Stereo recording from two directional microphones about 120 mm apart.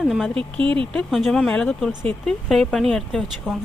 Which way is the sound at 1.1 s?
Centre (ahead or behind).